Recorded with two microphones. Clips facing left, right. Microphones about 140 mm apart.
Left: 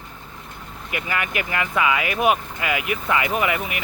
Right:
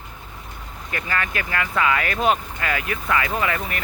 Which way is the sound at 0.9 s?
15° left (ahead or behind).